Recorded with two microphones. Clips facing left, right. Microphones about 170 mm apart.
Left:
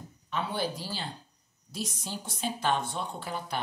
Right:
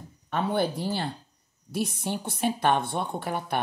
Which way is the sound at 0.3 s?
55° right (ahead or behind).